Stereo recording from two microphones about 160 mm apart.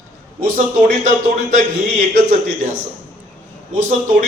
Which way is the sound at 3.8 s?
55° right (ahead or behind).